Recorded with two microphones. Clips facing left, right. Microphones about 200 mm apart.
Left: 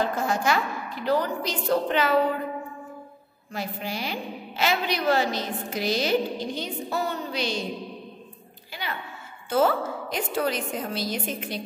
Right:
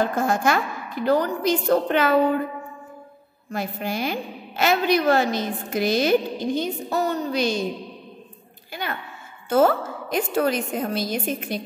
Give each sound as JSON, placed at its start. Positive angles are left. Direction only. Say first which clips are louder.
{"t": 0.0, "sound": "a woman's voice", "louder": "right 4 dB", "side_deg": -50}
{"t": 3.5, "sound": "a woman's voice", "louder": "right 4 dB", "side_deg": -50}
{"t": 9.5, "sound": "a woman's voice", "louder": "right 4 dB", "side_deg": -50}